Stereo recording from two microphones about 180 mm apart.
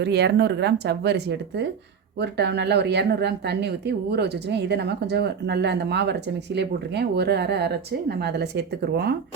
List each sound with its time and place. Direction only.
0.0 s a woman's voice: 65° right (ahead or behind)